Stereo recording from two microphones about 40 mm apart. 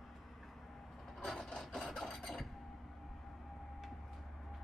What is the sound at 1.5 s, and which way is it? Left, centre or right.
Wood, centre.